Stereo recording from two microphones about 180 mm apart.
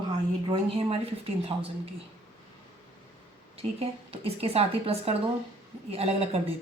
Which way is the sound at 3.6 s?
35° right (ahead or behind).